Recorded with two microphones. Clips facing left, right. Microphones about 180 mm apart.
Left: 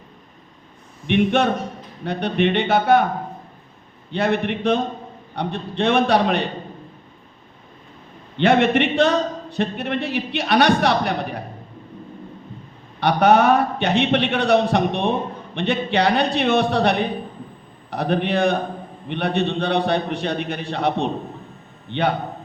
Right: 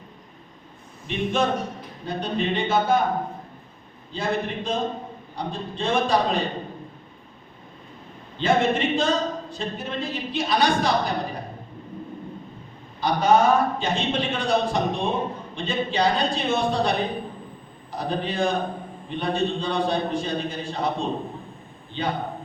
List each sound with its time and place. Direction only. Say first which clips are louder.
1.0 s a man's voice: left 6 dB; 65° left (ahead or behind)
4.1 s a man's voice: left 5 dB; 65° left (ahead or behind)
8.4 s a man's voice: left 5 dB; 65° left (ahead or behind)
13.0 s a man's voice: left 4 dB; 65° left (ahead or behind)